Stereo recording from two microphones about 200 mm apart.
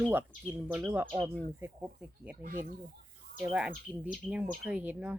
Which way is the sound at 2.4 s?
45° right (ahead or behind).